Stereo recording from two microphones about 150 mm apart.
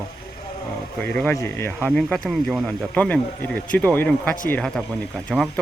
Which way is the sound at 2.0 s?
5° left (ahead or behind).